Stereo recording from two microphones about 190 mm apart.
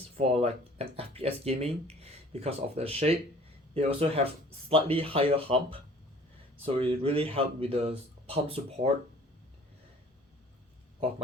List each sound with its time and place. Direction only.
0.2 s speech: 30° right (ahead or behind)